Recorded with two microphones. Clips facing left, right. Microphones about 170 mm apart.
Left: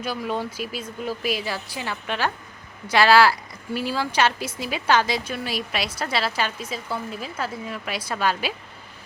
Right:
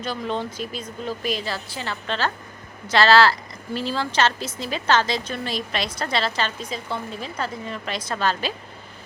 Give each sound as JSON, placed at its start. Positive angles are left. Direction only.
{"t": 0.0, "sound": "a woman's voice", "side_deg": 10}